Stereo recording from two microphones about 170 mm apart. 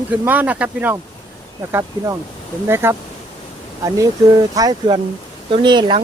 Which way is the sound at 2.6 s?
15° right (ahead or behind).